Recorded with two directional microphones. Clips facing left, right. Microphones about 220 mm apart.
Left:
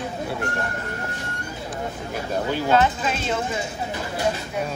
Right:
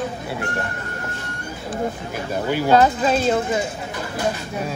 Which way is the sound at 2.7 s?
40° right (ahead or behind).